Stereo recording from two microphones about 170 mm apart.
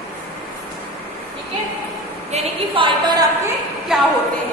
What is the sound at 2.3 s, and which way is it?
Speech, 30° right (ahead or behind).